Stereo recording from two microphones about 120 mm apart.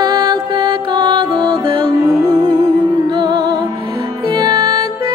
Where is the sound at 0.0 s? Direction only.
35° right (ahead or behind).